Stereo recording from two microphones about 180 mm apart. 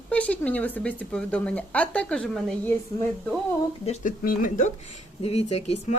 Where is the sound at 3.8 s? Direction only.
50° left (ahead or behind).